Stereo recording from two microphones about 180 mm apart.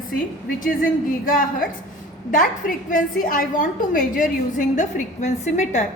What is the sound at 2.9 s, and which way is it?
A woman's voice, 50° left (ahead or behind).